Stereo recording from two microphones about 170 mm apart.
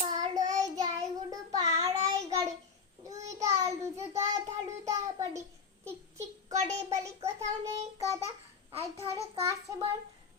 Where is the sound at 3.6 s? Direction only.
20° right (ahead or behind).